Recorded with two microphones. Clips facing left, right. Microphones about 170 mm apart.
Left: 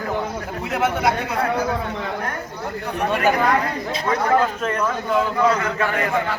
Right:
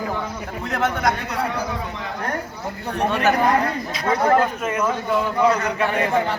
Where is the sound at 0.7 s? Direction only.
5° left (ahead or behind).